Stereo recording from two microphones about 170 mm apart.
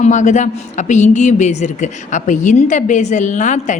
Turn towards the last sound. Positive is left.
turn(degrees=45)  # may be behind; listen again after turning